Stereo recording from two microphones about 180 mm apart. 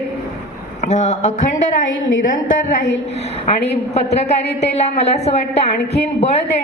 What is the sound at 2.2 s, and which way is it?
Speech, 45° left (ahead or behind).